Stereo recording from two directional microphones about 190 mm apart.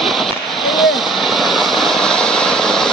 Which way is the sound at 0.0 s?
Centre (ahead or behind).